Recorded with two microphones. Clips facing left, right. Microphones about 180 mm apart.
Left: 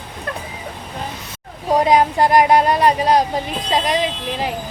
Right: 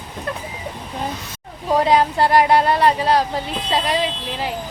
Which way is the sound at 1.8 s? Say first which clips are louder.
Left 2 dB; 15° left (ahead or behind).